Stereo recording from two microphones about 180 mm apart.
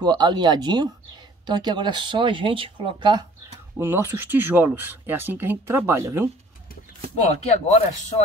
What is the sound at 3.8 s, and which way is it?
Speech, 10° right (ahead or behind).